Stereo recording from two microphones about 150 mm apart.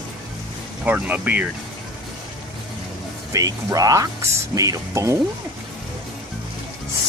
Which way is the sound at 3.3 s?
25° right (ahead or behind).